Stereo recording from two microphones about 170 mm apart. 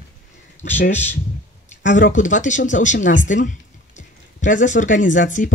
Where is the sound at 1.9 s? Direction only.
50° left (ahead or behind).